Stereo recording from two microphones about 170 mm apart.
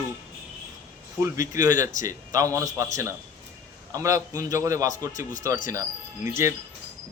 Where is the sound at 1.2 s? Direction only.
20° right (ahead or behind).